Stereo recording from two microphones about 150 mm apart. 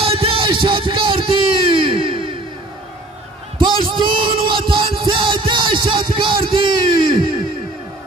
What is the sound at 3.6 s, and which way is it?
Music, 35° right (ahead or behind).